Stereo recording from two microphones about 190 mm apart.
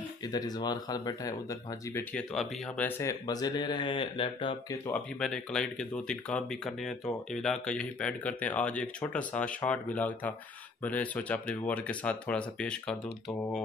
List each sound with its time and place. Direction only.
0.2 s speech: 20° left (ahead or behind)
4.8 s speech: 5° left (ahead or behind)